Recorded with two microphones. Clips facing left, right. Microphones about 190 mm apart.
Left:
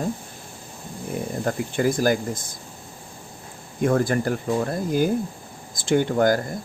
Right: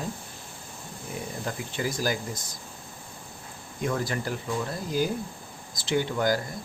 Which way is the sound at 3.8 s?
50° left (ahead or behind).